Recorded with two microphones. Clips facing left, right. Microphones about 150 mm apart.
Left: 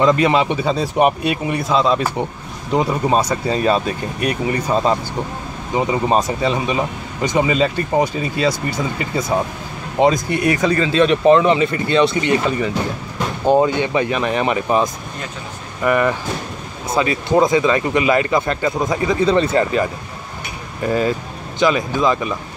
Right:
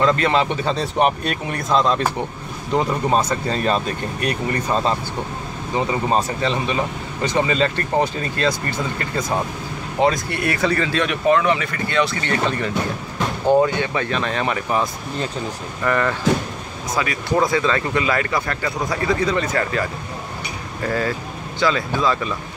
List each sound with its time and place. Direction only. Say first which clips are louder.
0.0 s speech: left 3 dB; 15° left (ahead or behind)
16.9 s speech: left 5 dB; 25° left (ahead or behind)